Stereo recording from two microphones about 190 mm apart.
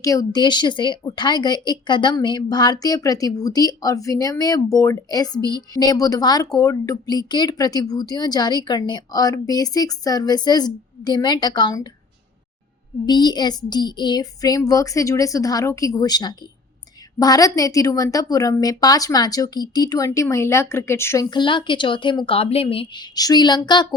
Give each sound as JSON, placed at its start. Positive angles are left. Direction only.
{"t": 0.0, "sound": "a woman's voice", "side_deg": 15}
{"t": 13.1, "sound": "a woman's voice", "side_deg": 20}